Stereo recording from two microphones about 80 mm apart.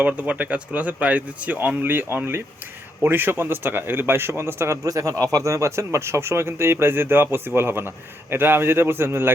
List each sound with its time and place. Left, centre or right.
0.0 s a man's voice: centre